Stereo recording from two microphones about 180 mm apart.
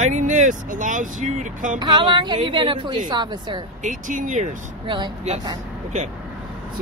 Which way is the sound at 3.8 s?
45° right (ahead or behind).